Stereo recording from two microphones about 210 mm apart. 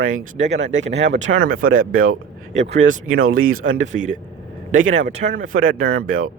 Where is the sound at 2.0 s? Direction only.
70° right (ahead or behind).